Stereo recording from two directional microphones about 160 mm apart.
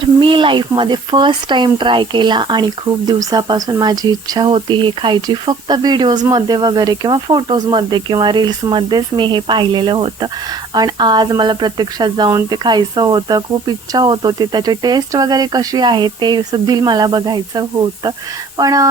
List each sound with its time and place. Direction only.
0.0 s speech: 30° right (ahead or behind)